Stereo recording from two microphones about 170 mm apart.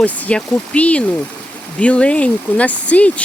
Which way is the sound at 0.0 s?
10° left (ahead or behind).